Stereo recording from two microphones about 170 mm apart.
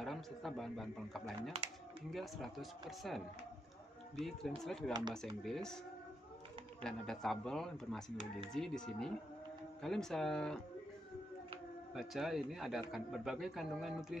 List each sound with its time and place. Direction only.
0.0 s a man's voice: centre (ahead or behind)
6.8 s a man's voice: 5° left (ahead or behind)
11.9 s a man's voice: centre (ahead or behind)